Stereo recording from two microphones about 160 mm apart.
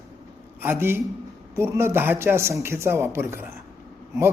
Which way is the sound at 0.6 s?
15° right (ahead or behind).